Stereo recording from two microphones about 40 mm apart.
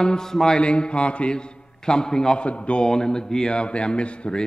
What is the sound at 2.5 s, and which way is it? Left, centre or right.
Speech, left.